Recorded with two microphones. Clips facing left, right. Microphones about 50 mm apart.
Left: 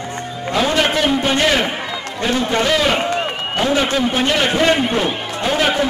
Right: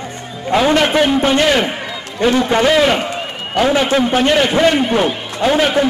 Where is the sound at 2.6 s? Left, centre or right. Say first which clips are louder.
Right 5 dB; centre.